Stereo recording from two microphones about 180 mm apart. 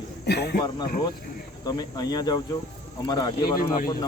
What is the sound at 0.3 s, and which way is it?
Speech, 65° left (ahead or behind).